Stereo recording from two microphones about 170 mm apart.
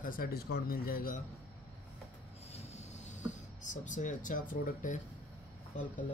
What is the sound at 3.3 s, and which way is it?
Speech, 45° left (ahead or behind).